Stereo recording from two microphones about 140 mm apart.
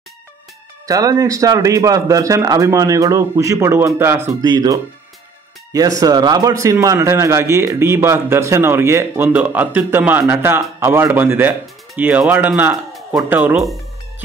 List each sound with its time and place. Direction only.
0.8 s a man's voice: 25° right (ahead or behind)
12.7 s a sound: centre (ahead or behind)
13.3 s speech: 10° right (ahead or behind)